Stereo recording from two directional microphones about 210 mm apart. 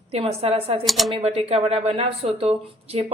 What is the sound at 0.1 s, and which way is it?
Speech, 30° right (ahead or behind).